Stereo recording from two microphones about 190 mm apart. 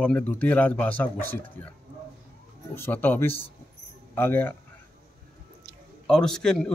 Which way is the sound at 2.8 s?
10° left (ahead or behind).